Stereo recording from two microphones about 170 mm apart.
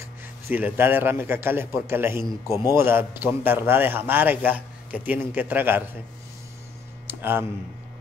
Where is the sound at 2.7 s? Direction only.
15° right (ahead or behind).